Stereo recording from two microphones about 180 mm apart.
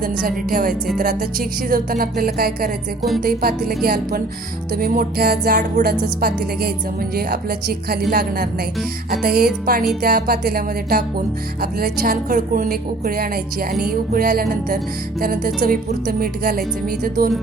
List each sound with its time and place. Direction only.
0.0 s a woman's voice: 55° right (ahead or behind)